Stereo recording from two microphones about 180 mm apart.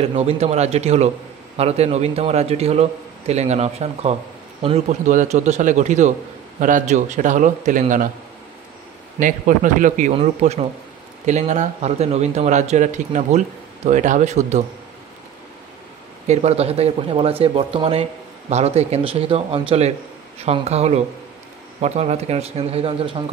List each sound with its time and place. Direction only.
0.1 s a man's voice: 35° right (ahead or behind)
9.2 s a man's voice: 45° right (ahead or behind)
16.3 s a man's voice: 35° right (ahead or behind)